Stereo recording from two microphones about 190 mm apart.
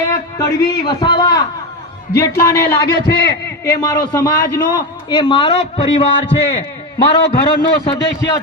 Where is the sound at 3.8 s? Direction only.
20° left (ahead or behind).